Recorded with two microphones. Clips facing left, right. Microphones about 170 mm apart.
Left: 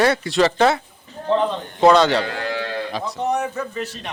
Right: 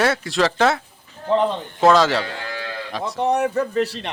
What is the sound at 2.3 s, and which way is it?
Livestock, 70° left (ahead or behind).